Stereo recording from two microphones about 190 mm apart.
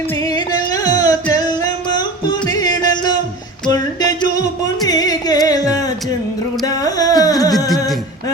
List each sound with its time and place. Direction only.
0.3 s music: 20° left (ahead or behind)